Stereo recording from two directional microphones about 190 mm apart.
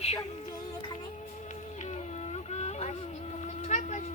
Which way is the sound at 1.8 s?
35° left (ahead or behind).